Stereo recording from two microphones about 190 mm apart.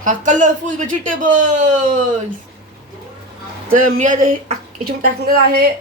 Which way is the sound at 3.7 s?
45° right (ahead or behind).